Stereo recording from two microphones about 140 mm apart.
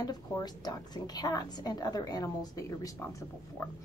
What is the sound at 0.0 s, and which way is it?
Speech, 30° left (ahead or behind).